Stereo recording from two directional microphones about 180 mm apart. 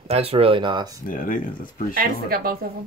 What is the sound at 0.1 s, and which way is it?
Speech, 35° right (ahead or behind).